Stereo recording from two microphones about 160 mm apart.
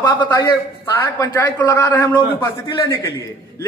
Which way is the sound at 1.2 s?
15° left (ahead or behind).